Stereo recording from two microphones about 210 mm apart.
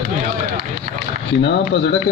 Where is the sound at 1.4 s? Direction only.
55° left (ahead or behind).